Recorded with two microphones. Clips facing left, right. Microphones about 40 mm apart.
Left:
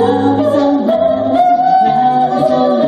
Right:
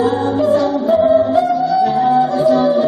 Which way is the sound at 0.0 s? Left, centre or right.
Left.